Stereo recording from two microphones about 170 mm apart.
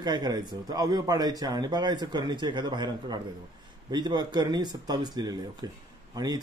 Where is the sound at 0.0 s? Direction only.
25° right (ahead or behind).